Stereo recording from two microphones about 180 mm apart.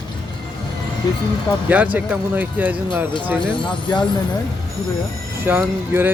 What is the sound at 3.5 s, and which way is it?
Speech, 25° left (ahead or behind).